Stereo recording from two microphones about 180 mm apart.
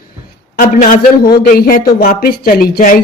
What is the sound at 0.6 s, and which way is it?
A man's voice, 45° left (ahead or behind).